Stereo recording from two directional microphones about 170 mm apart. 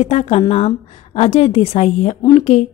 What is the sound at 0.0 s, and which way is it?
A woman's voice, 40° left (ahead or behind).